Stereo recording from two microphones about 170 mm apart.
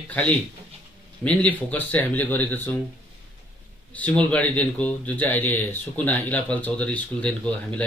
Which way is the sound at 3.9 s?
10° left (ahead or behind).